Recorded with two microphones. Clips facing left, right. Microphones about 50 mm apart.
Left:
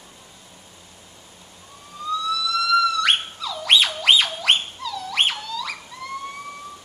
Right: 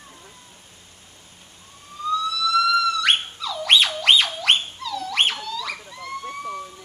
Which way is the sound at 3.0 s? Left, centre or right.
Centre.